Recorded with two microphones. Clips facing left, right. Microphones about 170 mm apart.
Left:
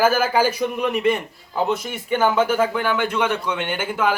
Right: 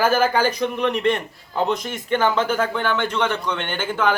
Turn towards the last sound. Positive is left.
turn(degrees=10)  # may be behind; listen again after turning